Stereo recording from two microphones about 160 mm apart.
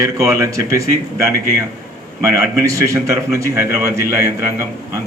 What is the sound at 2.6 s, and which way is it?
A man's voice, 20° right (ahead or behind).